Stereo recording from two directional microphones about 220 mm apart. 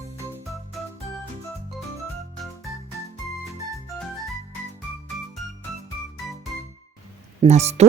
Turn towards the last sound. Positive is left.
turn(degrees=-30)  # may be behind; listen again after turning